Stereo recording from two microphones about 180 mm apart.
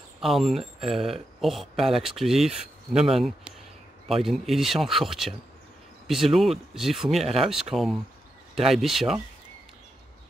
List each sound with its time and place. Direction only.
0.2 s speech: centre (ahead or behind)